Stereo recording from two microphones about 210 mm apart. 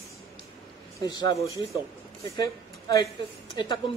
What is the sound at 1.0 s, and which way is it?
A man's voice, 20° left (ahead or behind).